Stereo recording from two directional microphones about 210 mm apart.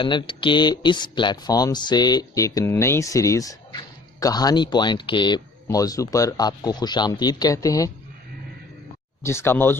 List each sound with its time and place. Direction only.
0.0 s speech: 20° left (ahead or behind)
9.2 s speech: 10° left (ahead or behind)